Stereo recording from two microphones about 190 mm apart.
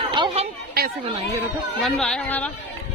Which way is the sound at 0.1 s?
30° right (ahead or behind).